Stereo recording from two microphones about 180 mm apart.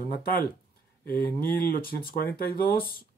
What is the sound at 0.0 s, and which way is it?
Speech, 55° left (ahead or behind).